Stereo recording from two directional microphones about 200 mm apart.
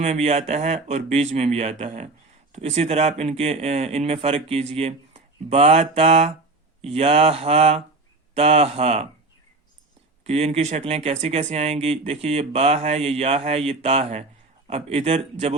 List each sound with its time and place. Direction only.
0.0 s speech: 35° right (ahead or behind)
10.2 s speech: 30° right (ahead or behind)